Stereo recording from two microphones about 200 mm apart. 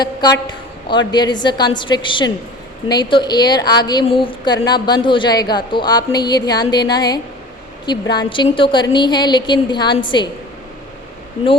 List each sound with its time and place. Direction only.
0.0 s a woman's voice: 20° left (ahead or behind)